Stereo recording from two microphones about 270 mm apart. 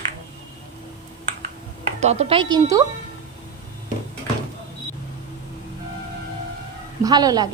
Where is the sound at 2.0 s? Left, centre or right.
Right.